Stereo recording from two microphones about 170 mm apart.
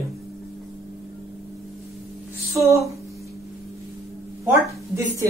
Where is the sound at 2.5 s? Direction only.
20° right (ahead or behind).